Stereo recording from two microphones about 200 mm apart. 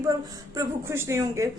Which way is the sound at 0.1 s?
15° right (ahead or behind).